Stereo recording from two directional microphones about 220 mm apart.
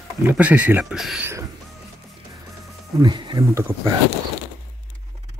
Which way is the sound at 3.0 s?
20° right (ahead or behind).